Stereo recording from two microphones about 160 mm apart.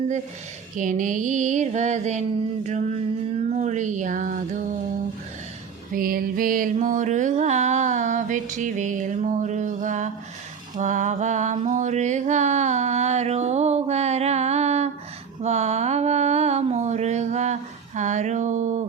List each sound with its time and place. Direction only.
0.8 s mantra: 55° right (ahead or behind)
3.5 s mantra: 50° right (ahead or behind)
5.9 s mantra: 65° right (ahead or behind)